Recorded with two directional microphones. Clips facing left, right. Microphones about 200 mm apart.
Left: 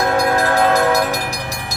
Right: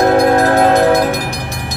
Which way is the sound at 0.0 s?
35° right (ahead or behind).